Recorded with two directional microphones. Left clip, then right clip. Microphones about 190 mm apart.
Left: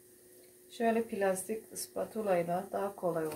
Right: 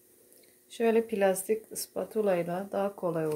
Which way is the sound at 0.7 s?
55° right (ahead or behind).